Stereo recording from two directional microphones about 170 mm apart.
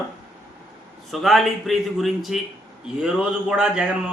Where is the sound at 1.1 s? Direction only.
Centre (ahead or behind).